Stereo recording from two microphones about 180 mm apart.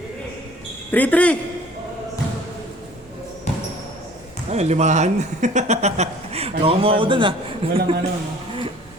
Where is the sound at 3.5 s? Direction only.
40° left (ahead or behind).